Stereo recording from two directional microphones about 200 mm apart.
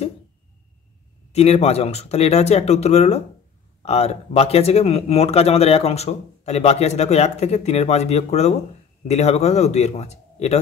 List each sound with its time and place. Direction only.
1.3 s speech: 30° left (ahead or behind)